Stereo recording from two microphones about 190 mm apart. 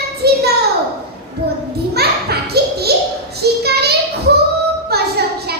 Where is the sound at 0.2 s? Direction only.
60° right (ahead or behind).